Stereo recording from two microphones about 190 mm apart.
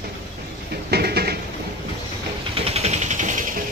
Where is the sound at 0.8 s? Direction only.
55° right (ahead or behind).